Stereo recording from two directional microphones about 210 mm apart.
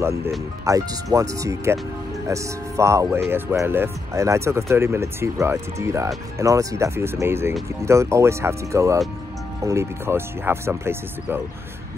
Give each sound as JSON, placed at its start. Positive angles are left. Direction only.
{"t": 0.7, "sound": "speech", "side_deg": -15}